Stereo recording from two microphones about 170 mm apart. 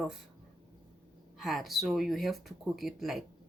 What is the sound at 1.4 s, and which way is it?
Speech, centre (ahead or behind).